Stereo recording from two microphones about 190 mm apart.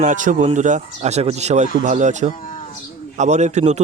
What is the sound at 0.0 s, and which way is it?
Speech, 40° right (ahead or behind).